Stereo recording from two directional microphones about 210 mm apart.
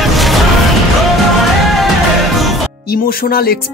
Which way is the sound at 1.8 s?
Centre (ahead or behind).